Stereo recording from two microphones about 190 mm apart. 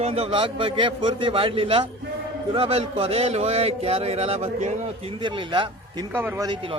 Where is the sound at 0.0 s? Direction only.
30° right (ahead or behind).